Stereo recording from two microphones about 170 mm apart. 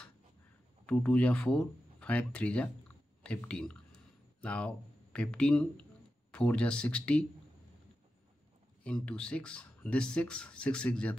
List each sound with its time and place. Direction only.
0.8 s speech: 5° left (ahead or behind)
3.3 s a sound: 5° left (ahead or behind)
6.3 s speech: 5° left (ahead or behind)
8.8 s speech: 5° left (ahead or behind)